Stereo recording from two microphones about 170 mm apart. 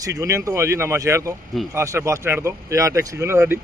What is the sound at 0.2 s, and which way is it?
Speech, 15° right (ahead or behind).